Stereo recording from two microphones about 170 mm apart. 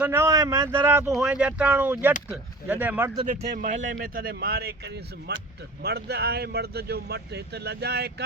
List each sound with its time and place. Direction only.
0.0 s speech: 15° right (ahead or behind)
3.6 s speech: 50° right (ahead or behind)
3.9 s speech: 60° right (ahead or behind)